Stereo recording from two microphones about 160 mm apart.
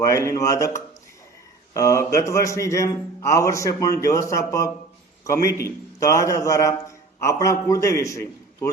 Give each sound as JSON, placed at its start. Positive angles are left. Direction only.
{"t": 0.0, "sound": "a man's voice", "side_deg": 20}
{"t": 1.7, "sound": "a man's voice", "side_deg": 20}